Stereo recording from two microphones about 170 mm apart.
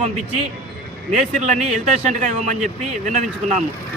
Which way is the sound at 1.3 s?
45° right (ahead or behind).